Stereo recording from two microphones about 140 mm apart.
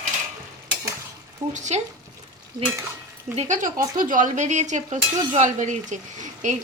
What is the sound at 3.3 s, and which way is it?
A woman's voice, 65° right (ahead or behind).